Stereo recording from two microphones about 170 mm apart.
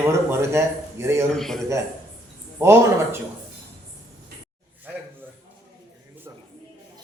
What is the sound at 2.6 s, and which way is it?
Speech, 15° right (ahead or behind).